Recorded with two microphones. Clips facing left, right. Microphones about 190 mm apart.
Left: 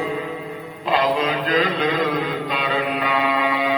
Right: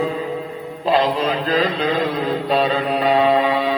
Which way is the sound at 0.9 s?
35° right (ahead or behind).